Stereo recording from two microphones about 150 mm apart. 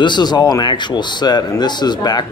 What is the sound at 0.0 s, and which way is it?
Speech, 30° left (ahead or behind).